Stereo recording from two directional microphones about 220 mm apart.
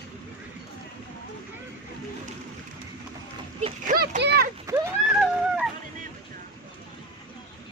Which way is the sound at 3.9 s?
45° right (ahead or behind).